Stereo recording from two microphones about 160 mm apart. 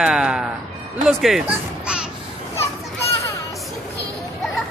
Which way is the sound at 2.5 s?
20° left (ahead or behind).